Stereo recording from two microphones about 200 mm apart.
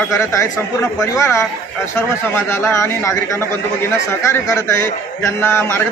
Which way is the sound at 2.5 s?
15° left (ahead or behind).